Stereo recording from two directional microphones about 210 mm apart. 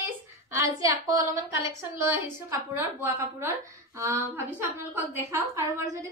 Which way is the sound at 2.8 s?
10° right (ahead or behind).